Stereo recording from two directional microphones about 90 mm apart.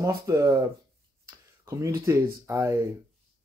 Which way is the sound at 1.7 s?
35° right (ahead or behind).